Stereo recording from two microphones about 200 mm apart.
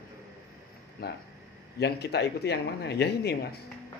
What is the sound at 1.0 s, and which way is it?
Speech, 50° left (ahead or behind).